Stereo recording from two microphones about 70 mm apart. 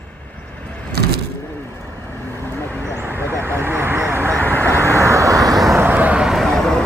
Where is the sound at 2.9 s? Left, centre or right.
Right.